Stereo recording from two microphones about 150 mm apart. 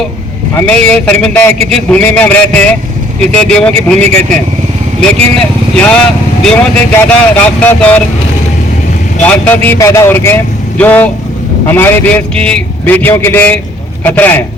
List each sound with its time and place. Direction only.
0.5 s a man's voice: 10° left (ahead or behind)
4.9 s a man's voice: 5° left (ahead or behind)
9.2 s a man's voice: 10° left (ahead or behind)